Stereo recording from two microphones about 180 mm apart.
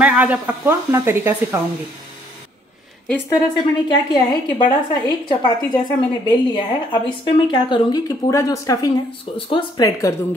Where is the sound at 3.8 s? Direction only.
20° left (ahead or behind).